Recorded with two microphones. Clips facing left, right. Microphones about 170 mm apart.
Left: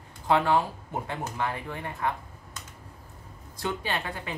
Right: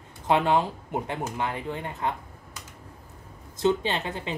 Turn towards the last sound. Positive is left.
turn(degrees=-25)  # may be behind; listen again after turning